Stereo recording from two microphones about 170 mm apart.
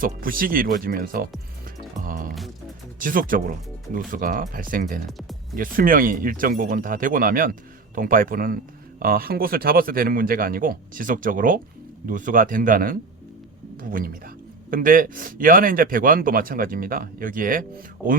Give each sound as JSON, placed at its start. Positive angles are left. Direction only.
{"t": 0.0, "sound": "speech", "side_deg": -55}
{"t": 1.6, "sound": "music", "side_deg": -55}
{"t": 3.0, "sound": "speech", "side_deg": -55}